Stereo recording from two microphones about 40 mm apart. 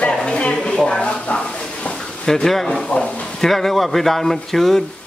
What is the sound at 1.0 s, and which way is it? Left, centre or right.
Speech, left.